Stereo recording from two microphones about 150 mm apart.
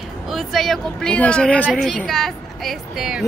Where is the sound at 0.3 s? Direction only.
Centre (ahead or behind).